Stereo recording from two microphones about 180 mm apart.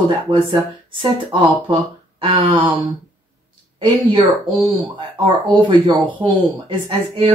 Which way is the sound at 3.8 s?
25° right (ahead or behind).